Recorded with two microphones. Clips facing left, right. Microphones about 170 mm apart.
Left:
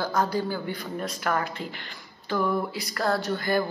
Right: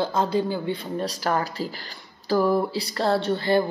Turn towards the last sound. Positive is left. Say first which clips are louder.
# right 4 dB
turn(degrees=-30)  # may be behind; listen again after turning